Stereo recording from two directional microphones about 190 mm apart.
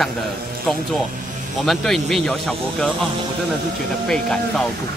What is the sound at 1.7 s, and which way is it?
Speech, centre (ahead or behind).